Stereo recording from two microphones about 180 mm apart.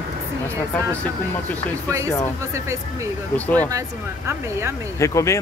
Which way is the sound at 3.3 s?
10° left (ahead or behind).